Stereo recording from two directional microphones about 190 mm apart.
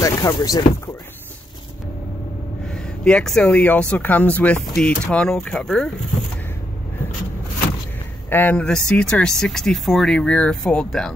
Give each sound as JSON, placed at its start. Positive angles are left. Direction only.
{"t": 0.0, "sound": "speech", "side_deg": 15}
{"t": 2.7, "sound": "speech", "side_deg": 5}
{"t": 8.3, "sound": "speech", "side_deg": 10}